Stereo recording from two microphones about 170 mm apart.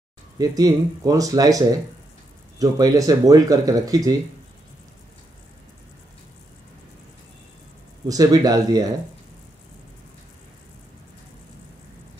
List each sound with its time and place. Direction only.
0.4 s speech: 20° right (ahead or behind)
2.6 s speech: 20° right (ahead or behind)
8.1 s speech: 20° right (ahead or behind)